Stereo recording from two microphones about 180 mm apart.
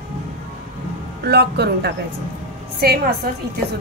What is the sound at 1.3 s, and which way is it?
A woman's voice, 65° right (ahead or behind).